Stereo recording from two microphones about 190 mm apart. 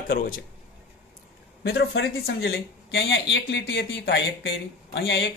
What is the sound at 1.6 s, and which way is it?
Speech, 70° left (ahead or behind).